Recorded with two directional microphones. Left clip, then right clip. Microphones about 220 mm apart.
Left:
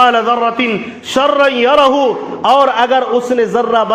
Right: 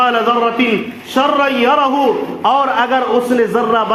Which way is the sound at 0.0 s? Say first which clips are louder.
Left 2 dB; 45° left (ahead or behind).